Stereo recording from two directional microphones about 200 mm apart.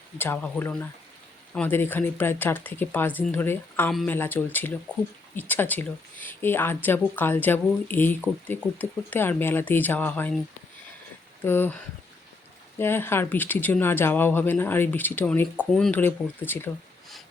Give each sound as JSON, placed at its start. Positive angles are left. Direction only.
{"t": 0.2, "sound": "speech", "side_deg": 10}
{"t": 11.4, "sound": "speech", "side_deg": 10}
{"t": 12.8, "sound": "speech", "side_deg": 10}